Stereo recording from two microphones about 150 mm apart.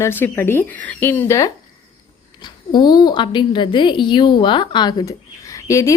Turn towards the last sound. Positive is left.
turn(degrees=20)  # may be behind; listen again after turning